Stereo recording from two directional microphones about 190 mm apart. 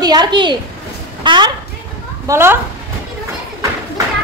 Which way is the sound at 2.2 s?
15° right (ahead or behind).